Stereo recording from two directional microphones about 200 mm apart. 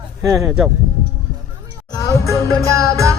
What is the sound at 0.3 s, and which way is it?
Speech, centre (ahead or behind).